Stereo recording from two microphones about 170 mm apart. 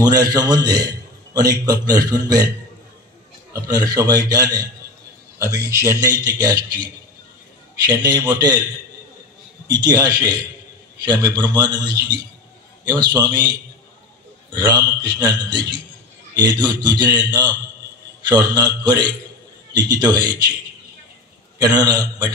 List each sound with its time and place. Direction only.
0.0 s a man's voice: 20° right (ahead or behind)
3.5 s a man's voice: 20° right (ahead or behind)
9.7 s a man's voice: 25° right (ahead or behind)
21.5 s a man's voice: 25° right (ahead or behind)